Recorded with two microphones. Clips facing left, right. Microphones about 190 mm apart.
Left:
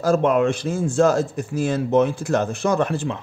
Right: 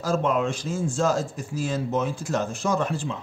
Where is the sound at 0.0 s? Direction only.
60° left (ahead or behind).